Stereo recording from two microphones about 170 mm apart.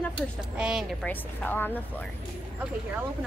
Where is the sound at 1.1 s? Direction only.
10° left (ahead or behind).